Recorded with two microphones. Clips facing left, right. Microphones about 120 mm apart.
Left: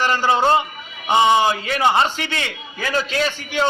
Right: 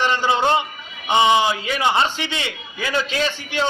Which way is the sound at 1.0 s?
Centre (ahead or behind).